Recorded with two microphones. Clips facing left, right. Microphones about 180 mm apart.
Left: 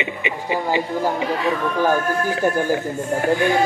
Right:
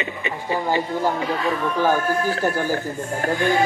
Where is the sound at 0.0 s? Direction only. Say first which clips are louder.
Left 2 dB; 15° left (ahead or behind).